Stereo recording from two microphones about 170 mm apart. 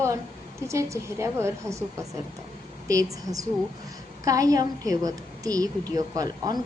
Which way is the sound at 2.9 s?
20° right (ahead or behind).